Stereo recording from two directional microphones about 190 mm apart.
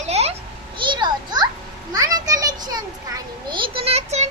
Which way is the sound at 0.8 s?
25° right (ahead or behind).